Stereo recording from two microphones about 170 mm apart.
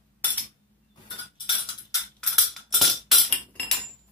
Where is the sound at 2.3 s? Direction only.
Centre (ahead or behind).